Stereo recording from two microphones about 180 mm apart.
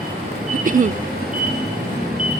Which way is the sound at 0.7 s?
50° right (ahead or behind).